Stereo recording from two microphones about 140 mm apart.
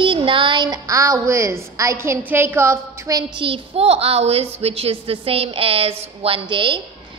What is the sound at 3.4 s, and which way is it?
A woman's voice, 45° right (ahead or behind).